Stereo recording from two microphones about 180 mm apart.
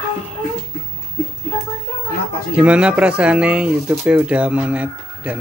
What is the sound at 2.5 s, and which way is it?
Speech, 5° right (ahead or behind).